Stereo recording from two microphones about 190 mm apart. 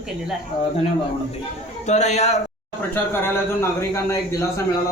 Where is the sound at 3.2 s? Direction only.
15° left (ahead or behind).